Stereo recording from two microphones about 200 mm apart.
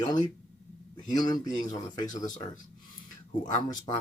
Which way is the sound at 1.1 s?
20° left (ahead or behind).